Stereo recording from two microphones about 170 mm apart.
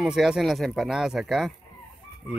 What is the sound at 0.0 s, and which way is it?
Speech, centre (ahead or behind).